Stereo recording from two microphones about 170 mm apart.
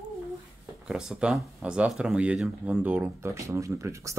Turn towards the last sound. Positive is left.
turn(degrees=-15)  # may be behind; listen again after turning